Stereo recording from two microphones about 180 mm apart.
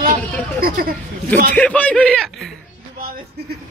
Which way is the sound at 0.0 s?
55° right (ahead or behind).